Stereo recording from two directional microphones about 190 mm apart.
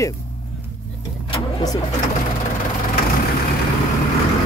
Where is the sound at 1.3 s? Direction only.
20° left (ahead or behind).